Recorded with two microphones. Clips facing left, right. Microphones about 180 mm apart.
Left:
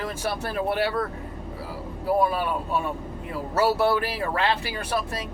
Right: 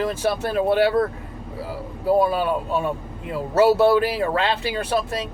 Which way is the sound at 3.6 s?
25° right (ahead or behind).